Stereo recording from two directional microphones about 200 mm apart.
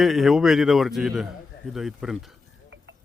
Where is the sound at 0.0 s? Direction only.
Centre (ahead or behind).